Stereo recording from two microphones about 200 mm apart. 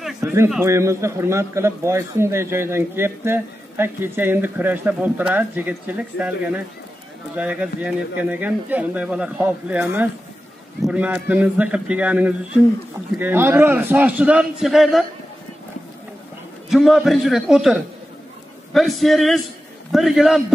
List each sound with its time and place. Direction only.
0.2 s a man's voice: 15° right (ahead or behind)
16.6 s a man's voice: centre (ahead or behind)